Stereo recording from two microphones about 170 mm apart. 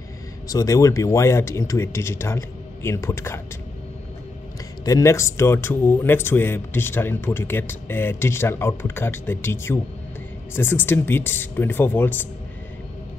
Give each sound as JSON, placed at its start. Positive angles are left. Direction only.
{"t": 0.5, "sound": "a man's voice", "side_deg": 20}
{"t": 4.8, "sound": "a man's voice", "side_deg": 15}